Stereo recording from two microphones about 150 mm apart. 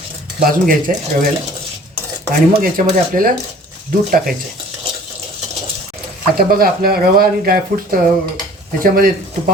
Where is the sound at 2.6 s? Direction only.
70° right (ahead or behind).